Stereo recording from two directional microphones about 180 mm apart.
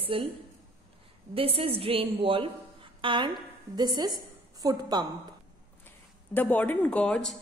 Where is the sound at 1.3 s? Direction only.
30° right (ahead or behind).